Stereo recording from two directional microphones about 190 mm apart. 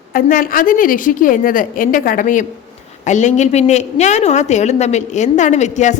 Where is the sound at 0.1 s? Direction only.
45° left (ahead or behind).